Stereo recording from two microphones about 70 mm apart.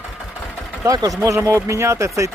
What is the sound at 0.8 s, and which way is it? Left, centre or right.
Speech, right.